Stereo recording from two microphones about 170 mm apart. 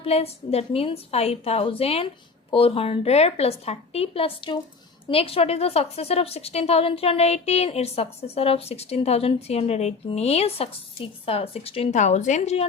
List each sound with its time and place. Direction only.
0.0 s a woman's voice: 35° left (ahead or behind)